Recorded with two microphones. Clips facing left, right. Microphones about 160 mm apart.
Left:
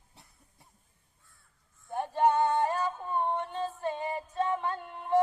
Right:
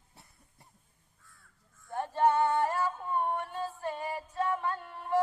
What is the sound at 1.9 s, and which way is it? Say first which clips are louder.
Female singing: left 1 dB; 15° left (ahead or behind).